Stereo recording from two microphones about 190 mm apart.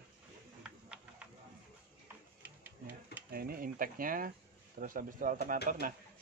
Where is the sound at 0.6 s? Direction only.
5° right (ahead or behind).